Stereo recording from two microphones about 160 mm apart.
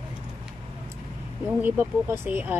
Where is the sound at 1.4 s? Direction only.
10° right (ahead or behind).